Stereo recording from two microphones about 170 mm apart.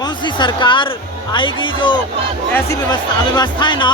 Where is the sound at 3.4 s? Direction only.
25° left (ahead or behind).